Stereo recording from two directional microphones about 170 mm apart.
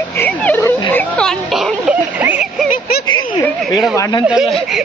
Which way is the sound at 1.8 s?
10° right (ahead or behind).